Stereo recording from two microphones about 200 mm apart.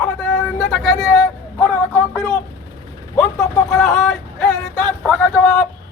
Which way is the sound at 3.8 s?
Centre (ahead or behind).